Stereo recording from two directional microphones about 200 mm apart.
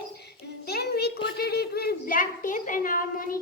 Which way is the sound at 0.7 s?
55° left (ahead or behind).